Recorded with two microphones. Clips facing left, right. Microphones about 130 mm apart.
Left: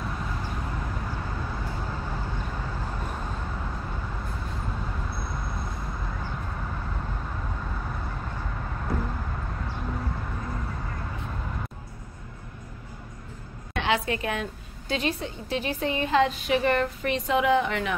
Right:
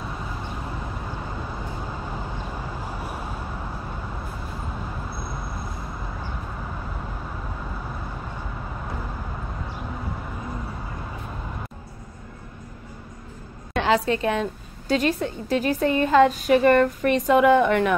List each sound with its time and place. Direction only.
1.0 s vehicle: 15° right (ahead or behind)
7.7 s vehicle: 10° right (ahead or behind)
9.7 s a sound: 5° right (ahead or behind)
13.8 s a woman's voice: 35° right (ahead or behind); by 17.9 s 50° right (ahead or behind)